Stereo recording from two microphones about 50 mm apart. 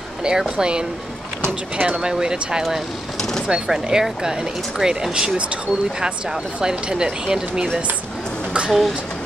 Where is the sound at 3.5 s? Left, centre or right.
Centre.